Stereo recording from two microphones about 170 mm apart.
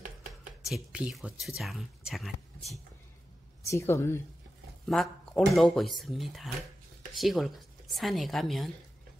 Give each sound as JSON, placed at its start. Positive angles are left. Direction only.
{"t": 0.7, "sound": "speech", "side_deg": -5}
{"t": 3.6, "sound": "speech", "side_deg": 15}
{"t": 4.8, "sound": "speech", "side_deg": 0}